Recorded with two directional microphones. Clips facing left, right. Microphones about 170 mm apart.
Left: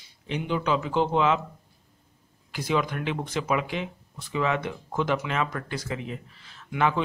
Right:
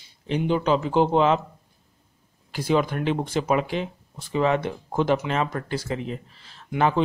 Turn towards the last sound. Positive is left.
turn(degrees=-35)  # may be behind; listen again after turning